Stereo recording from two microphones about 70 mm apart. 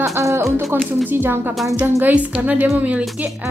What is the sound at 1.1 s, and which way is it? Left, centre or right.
A woman's voice, right.